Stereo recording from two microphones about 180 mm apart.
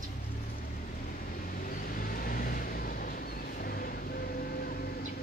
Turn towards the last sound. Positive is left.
turn(degrees=55)  # may be behind; listen again after turning